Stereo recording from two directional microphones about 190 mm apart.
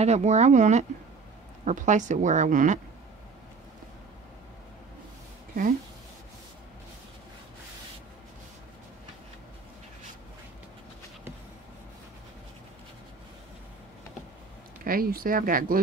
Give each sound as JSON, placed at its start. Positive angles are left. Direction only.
{"t": 0.0, "sound": "speech", "side_deg": -35}
{"t": 14.9, "sound": "speech", "side_deg": -50}